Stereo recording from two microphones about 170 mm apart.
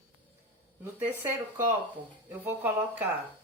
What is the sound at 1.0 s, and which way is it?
Speech, 10° right (ahead or behind).